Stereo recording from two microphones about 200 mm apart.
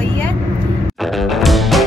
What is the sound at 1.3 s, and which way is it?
Music, centre (ahead or behind).